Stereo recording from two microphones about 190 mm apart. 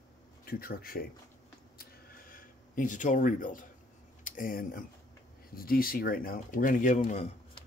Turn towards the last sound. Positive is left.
turn(degrees=35)  # may be behind; listen again after turning